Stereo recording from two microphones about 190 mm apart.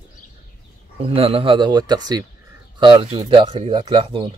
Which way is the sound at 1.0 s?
30° right (ahead or behind).